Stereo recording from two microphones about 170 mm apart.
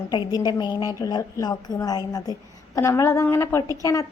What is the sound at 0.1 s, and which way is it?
A woman's voice, 25° left (ahead or behind).